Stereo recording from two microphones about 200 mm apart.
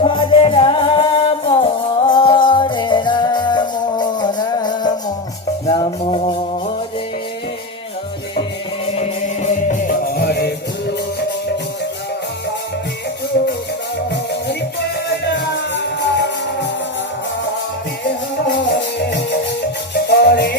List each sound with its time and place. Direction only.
0.0 s music: 25° left (ahead or behind)
9.0 s music: 35° left (ahead or behind)
13.3 s music: 55° left (ahead or behind)
15.1 s music: 60° left (ahead or behind)
18.4 s music: 60° left (ahead or behind)